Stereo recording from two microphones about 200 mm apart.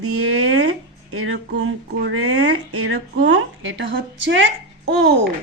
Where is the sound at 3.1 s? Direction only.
65° right (ahead or behind).